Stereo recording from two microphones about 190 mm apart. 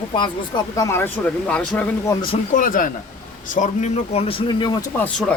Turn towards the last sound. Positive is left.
turn(degrees=5)  # may be behind; listen again after turning